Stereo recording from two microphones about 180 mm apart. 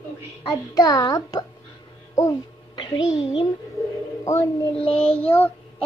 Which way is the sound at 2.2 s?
20° left (ahead or behind).